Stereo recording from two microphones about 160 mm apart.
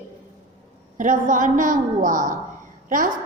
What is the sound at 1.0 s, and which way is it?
A woman's voice, 55° right (ahead or behind).